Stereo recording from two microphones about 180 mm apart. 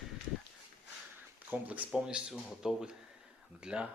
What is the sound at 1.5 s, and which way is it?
Speech, 10° right (ahead or behind).